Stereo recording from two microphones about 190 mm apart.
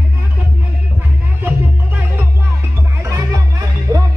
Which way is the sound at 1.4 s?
10° right (ahead or behind).